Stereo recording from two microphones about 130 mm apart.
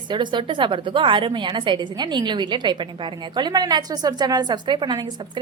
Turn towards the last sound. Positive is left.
turn(degrees=-35)  # may be behind; listen again after turning